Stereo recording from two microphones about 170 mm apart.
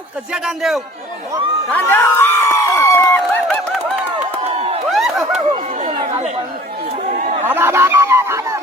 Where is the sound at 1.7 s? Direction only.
10° left (ahead or behind).